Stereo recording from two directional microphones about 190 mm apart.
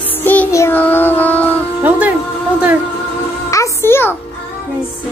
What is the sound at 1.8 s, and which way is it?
Music, 10° right (ahead or behind).